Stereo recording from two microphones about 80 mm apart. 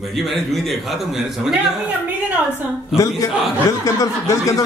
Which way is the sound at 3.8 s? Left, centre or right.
Left.